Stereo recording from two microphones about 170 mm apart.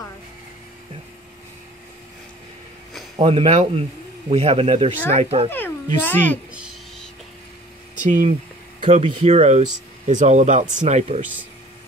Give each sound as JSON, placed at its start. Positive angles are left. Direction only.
{"t": 3.2, "sound": "speech", "side_deg": -35}
{"t": 6.0, "sound": "a woman's voice", "side_deg": 10}
{"t": 8.0, "sound": "speech", "side_deg": -45}
{"t": 8.8, "sound": "speech", "side_deg": -35}